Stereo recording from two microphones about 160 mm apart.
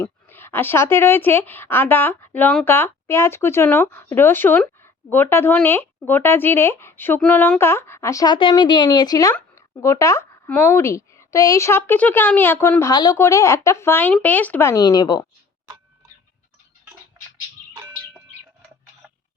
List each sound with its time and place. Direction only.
0.0 s speech: 15° left (ahead or behind)